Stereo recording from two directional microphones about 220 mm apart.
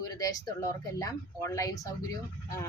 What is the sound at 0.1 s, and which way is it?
A woman's voice, 15° left (ahead or behind).